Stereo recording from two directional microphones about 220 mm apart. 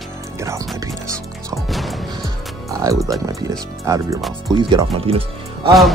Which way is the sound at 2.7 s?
15° right (ahead or behind).